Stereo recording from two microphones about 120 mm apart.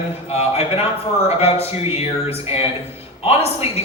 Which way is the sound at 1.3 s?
55° left (ahead or behind).